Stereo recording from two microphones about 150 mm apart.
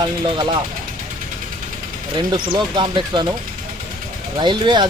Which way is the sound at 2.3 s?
30° right (ahead or behind).